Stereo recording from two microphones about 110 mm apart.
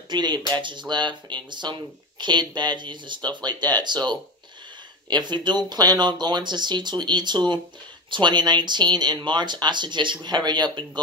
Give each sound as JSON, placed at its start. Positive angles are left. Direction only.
{"t": 0.1, "sound": "speech", "side_deg": -40}